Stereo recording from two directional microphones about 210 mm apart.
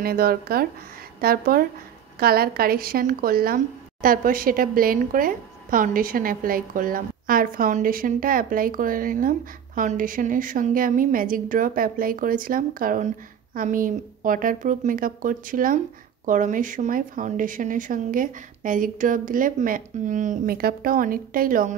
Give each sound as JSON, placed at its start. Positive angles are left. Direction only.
{"t": 0.0, "sound": "a woman's voice", "side_deg": -45}